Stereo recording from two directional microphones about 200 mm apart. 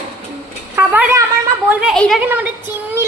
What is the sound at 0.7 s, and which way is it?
A woman's voice, 10° right (ahead or behind).